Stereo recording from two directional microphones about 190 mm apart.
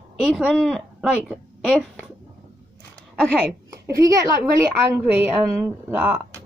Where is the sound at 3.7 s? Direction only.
15° right (ahead or behind).